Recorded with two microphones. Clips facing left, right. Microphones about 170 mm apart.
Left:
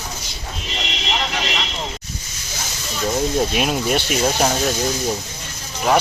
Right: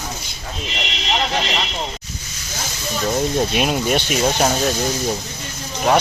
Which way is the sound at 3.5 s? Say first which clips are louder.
Right 1 dB; centre (ahead or behind).